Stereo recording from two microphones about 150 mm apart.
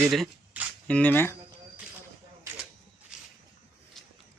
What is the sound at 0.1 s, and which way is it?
Speech, centre (ahead or behind).